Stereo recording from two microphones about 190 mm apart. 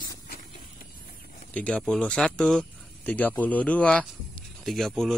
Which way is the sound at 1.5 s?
5° left (ahead or behind).